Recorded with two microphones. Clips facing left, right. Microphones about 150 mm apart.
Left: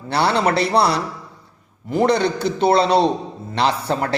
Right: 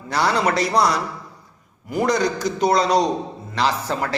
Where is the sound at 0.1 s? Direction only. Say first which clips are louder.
Left 2 dB; 30° left (ahead or behind).